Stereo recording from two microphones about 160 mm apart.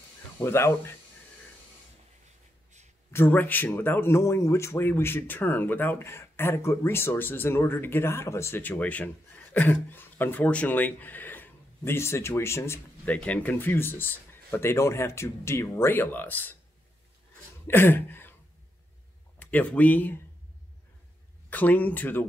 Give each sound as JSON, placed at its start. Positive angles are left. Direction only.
{"t": 0.4, "sound": "speech", "side_deg": 15}
{"t": 3.1, "sound": "speech", "side_deg": 15}
{"t": 17.6, "sound": "speech", "side_deg": 15}
{"t": 19.3, "sound": "speech", "side_deg": 10}
{"t": 21.5, "sound": "speech", "side_deg": 10}